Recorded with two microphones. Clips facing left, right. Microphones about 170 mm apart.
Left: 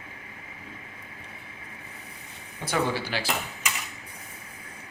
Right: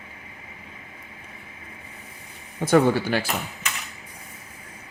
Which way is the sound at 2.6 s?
50° right (ahead or behind).